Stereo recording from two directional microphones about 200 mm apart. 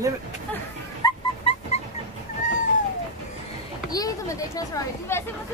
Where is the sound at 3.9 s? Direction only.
15° left (ahead or behind).